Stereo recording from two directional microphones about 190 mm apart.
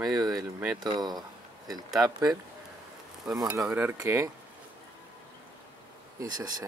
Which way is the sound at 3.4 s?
15° right (ahead or behind).